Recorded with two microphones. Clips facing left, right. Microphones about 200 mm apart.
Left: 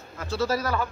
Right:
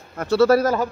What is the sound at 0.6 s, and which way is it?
Speech, 45° right (ahead or behind).